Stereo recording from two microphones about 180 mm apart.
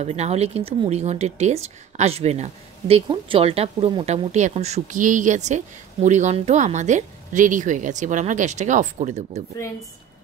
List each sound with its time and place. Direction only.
0.0 s speech: 35° right (ahead or behind)